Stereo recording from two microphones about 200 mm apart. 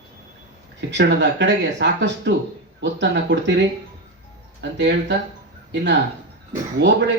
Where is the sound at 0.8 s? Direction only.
60° right (ahead or behind).